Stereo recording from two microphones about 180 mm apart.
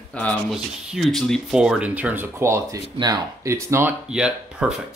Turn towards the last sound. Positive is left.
turn(degrees=-5)  # may be behind; listen again after turning